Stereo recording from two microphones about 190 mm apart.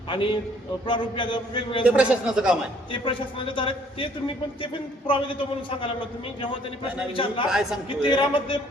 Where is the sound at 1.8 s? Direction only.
5° right (ahead or behind).